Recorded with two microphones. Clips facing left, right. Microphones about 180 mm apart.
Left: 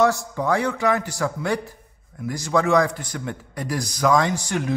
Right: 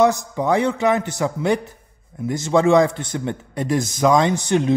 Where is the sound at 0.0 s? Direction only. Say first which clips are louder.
Right 3 dB; 20° right (ahead or behind).